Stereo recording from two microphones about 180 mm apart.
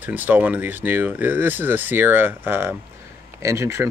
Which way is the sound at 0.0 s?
10° right (ahead or behind).